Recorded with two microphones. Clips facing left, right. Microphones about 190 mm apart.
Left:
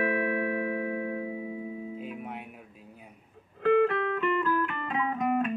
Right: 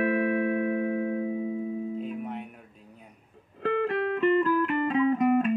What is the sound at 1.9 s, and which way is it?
Music, 5° left (ahead or behind).